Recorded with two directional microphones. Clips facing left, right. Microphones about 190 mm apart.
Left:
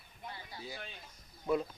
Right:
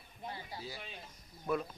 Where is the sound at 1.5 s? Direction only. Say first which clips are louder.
Left 3 dB; 20° left (ahead or behind).